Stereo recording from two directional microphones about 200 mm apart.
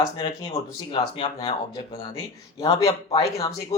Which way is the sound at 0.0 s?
20° left (ahead or behind).